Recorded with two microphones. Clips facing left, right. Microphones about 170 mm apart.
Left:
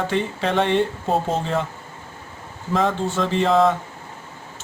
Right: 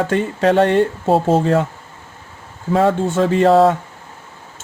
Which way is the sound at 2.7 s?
55° right (ahead or behind).